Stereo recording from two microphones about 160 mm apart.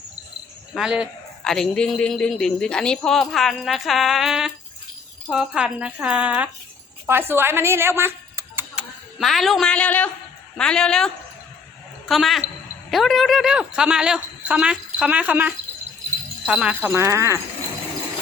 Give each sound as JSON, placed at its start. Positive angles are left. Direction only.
{"t": 0.7, "sound": "a woman's voice", "side_deg": -5}
{"t": 16.9, "sound": "speech", "side_deg": -15}